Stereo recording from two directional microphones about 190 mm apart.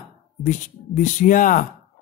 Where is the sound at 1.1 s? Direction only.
45° left (ahead or behind).